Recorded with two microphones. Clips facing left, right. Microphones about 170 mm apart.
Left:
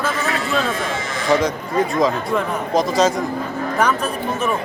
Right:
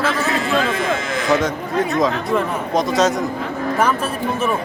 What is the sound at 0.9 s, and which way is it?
Speech, 55° right (ahead or behind).